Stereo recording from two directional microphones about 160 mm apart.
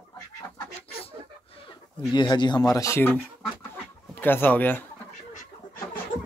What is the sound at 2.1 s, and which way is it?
Speech, 30° left (ahead or behind).